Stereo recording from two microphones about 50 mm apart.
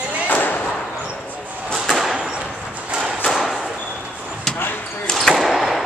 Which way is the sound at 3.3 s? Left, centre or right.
Centre.